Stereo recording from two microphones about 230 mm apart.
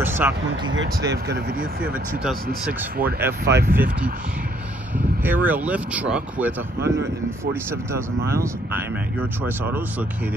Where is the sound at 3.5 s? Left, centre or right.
Right.